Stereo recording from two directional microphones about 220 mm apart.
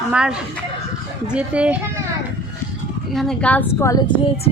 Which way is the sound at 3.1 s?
Centre (ahead or behind).